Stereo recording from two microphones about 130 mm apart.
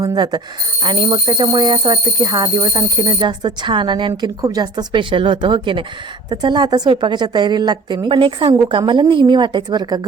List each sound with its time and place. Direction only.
0.0 s speech: 30° right (ahead or behind)